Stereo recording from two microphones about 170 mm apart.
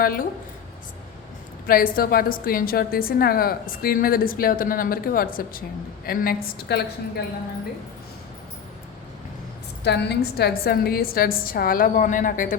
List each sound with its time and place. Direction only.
0.0 s a woman's voice: 60° left (ahead or behind)
1.6 s a woman's voice: 60° left (ahead or behind)
9.8 s a woman's voice: 80° left; by 12.5 s 50° left (ahead or behind)